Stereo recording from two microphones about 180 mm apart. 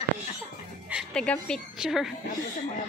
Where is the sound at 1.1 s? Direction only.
5° left (ahead or behind).